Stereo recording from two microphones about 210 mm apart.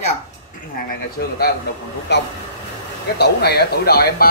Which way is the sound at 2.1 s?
55° left (ahead or behind).